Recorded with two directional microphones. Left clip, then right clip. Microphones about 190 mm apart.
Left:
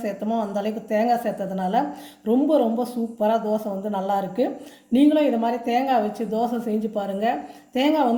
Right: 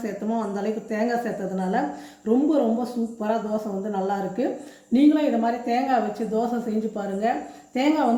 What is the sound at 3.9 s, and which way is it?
A woman's voice, 50° left (ahead or behind).